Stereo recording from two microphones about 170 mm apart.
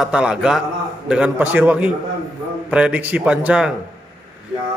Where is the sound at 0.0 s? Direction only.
5° right (ahead or behind).